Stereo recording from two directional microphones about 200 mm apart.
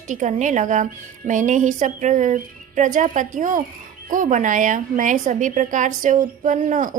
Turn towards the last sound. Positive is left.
turn(degrees=-40)  # may be behind; listen again after turning